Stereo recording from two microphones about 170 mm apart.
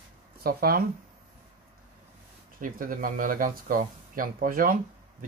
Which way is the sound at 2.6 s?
55° right (ahead or behind).